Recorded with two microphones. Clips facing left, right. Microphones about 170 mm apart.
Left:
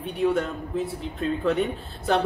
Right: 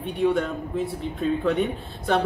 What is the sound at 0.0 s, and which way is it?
A woman's voice, centre (ahead or behind).